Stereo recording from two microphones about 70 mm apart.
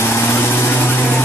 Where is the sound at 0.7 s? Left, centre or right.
Left.